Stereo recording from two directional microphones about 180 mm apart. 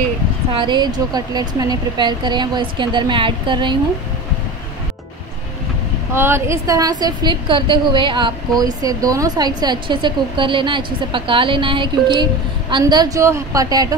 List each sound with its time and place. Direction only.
0.5 s a woman's voice: 25° right (ahead or behind)
6.1 s a woman's voice: 15° right (ahead or behind)